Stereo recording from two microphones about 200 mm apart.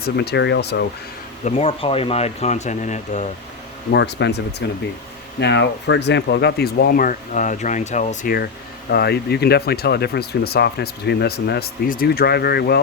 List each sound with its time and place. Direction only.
0.0 s speech: 55° left (ahead or behind)
1.5 s speech: 30° left (ahead or behind)
3.9 s speech: 60° left (ahead or behind)
8.9 s speech: 55° left (ahead or behind)